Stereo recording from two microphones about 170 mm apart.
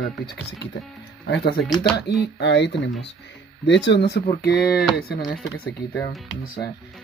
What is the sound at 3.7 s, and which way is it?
Speech, 85° left.